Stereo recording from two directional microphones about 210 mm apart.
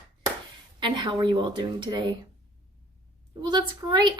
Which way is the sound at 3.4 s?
20° right (ahead or behind).